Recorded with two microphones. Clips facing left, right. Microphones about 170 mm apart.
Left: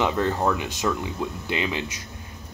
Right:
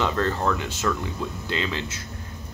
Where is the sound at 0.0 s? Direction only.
15° left (ahead or behind).